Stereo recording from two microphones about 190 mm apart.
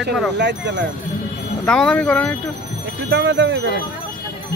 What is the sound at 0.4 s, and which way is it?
Speech, 65° right (ahead or behind).